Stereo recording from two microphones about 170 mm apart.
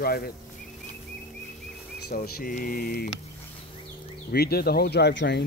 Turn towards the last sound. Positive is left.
turn(degrees=85)